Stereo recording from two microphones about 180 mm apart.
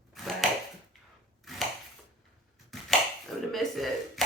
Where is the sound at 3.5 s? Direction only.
Centre (ahead or behind).